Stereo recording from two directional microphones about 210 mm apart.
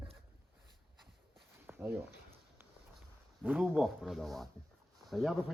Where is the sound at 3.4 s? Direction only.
5° right (ahead or behind).